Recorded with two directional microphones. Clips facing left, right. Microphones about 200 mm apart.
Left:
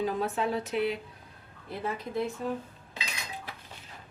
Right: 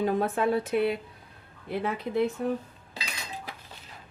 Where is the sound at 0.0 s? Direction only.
55° right (ahead or behind).